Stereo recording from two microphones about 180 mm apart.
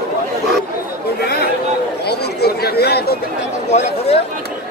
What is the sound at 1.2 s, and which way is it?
Chatter, 60° left (ahead or behind).